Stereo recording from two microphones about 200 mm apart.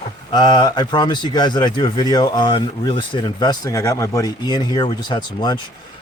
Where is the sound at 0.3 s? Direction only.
20° left (ahead or behind).